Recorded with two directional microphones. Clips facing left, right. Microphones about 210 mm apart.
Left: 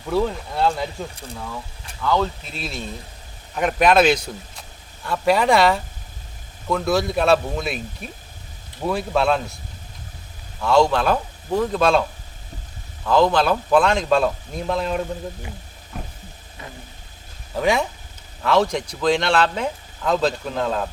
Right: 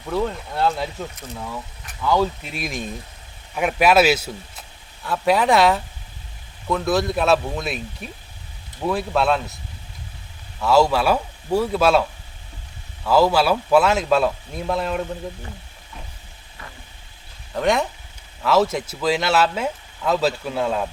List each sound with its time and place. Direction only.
0.1 s speech: centre (ahead or behind)
2.0 s speech: 10° right (ahead or behind)
10.6 s speech: 5° right (ahead or behind)
13.1 s speech: 5° right (ahead or behind)
17.5 s speech: centre (ahead or behind)